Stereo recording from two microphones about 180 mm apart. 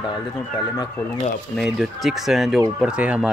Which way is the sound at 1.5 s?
Centre (ahead or behind).